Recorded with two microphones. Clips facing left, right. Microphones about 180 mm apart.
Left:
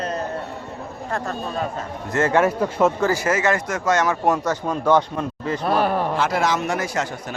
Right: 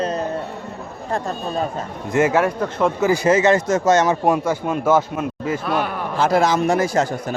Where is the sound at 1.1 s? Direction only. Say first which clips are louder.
Right 3 dB; 30° right (ahead or behind).